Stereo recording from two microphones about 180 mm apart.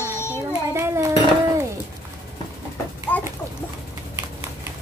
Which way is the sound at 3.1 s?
10° left (ahead or behind).